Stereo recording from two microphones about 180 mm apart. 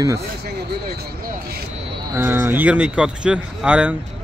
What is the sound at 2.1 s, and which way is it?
Speech, 10° right (ahead or behind).